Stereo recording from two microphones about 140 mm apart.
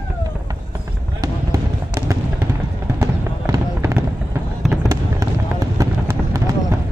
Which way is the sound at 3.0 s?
25° right (ahead or behind).